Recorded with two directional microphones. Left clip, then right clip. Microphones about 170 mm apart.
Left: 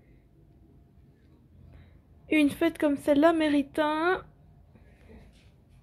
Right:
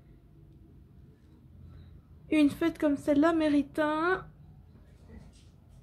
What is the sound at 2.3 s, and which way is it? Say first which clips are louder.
A woman's voice: left 2 dB; 20° left (ahead or behind).